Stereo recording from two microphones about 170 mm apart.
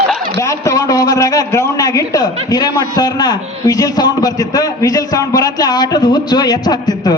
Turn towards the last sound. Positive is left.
turn(degrees=25)  # may be behind; listen again after turning